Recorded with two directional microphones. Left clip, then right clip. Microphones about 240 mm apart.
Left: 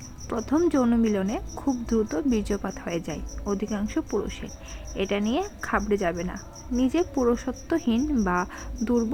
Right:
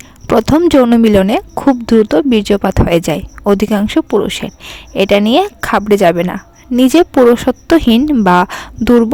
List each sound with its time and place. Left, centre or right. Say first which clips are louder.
0.3 s speech: right 15 dB; right